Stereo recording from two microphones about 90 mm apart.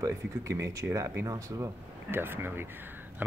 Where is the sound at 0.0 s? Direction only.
40° right (ahead or behind).